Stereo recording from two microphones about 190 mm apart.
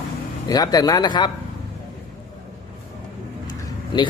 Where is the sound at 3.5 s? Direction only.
25° left (ahead or behind).